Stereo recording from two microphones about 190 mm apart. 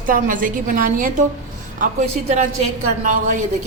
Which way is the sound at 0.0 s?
45° right (ahead or behind).